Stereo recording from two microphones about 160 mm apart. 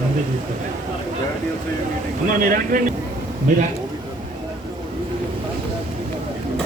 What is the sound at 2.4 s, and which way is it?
Speech, 60° right (ahead or behind).